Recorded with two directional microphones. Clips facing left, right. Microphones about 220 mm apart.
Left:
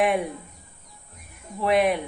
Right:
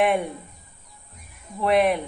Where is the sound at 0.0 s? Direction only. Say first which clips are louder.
Right 1 dB; centre (ahead or behind).